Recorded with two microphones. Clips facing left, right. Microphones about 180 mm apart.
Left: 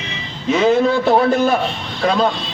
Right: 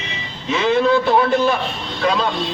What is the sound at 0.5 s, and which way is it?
A man's voice, 45° left (ahead or behind).